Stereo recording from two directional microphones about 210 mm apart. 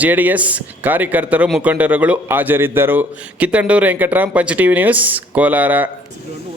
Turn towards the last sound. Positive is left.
turn(degrees=-10)  # may be behind; listen again after turning